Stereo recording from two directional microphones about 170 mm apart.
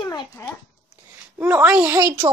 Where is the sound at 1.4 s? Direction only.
10° right (ahead or behind).